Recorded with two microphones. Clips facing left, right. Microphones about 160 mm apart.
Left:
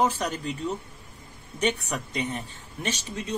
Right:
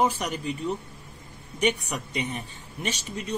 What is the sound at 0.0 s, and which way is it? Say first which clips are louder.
Speech: even; 10° right (ahead or behind).